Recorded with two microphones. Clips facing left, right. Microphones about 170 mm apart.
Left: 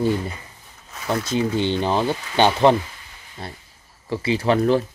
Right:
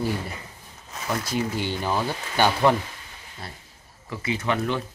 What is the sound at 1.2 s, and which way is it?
Speech, 25° left (ahead or behind).